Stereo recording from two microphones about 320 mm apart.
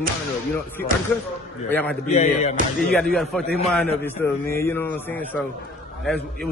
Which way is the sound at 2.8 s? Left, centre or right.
Centre.